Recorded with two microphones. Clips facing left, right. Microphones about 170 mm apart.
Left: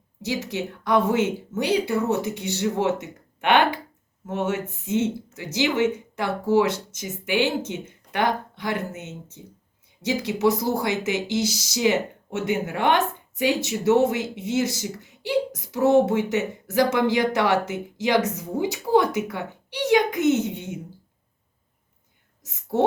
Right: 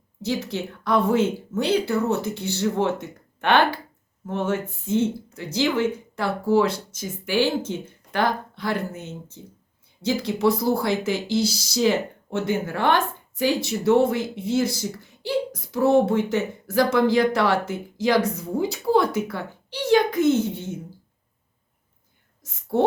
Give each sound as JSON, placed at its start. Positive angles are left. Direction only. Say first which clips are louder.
{"t": 0.4, "sound": "a child's voice", "louder": "even", "side_deg": 15}
{"t": 4.9, "sound": "speech", "louder": "right 1 dB", "side_deg": -35}
{"t": 5.5, "sound": "a child's voice", "louder": "even", "side_deg": 20}